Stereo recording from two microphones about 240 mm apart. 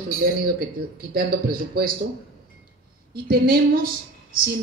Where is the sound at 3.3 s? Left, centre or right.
Right.